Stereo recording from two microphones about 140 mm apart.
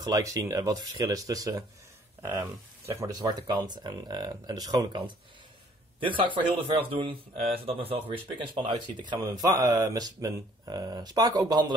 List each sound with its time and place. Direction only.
0.0 s speech: 25° right (ahead or behind)
2.9 s speech: 25° right (ahead or behind)